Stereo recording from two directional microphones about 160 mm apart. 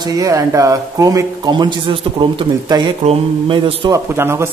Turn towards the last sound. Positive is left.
turn(degrees=-15)  # may be behind; listen again after turning